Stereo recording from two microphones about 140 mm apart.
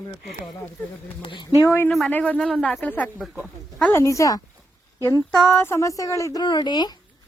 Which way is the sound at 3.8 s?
20° left (ahead or behind).